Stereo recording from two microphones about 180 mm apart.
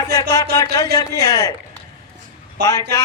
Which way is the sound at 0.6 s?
20° left (ahead or behind).